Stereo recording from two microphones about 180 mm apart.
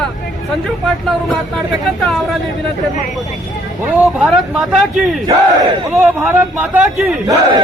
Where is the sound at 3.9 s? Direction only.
Centre (ahead or behind).